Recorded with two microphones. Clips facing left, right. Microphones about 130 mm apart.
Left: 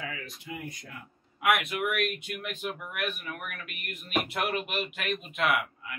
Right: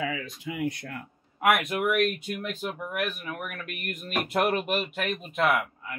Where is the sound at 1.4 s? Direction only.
40° right (ahead or behind).